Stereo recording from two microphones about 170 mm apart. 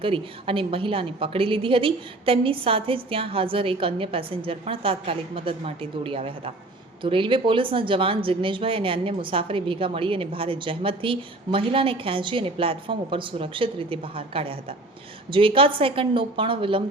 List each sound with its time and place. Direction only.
0.0 s speech: 30° right (ahead or behind)